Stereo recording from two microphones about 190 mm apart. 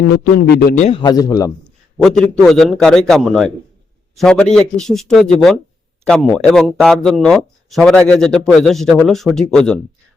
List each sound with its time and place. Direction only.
0.3 s a man's voice: 55° left (ahead or behind)
0.8 s a man's voice: 30° left (ahead or behind)
1.6 s a sound: centre (ahead or behind)
2.3 s speech: centre (ahead or behind)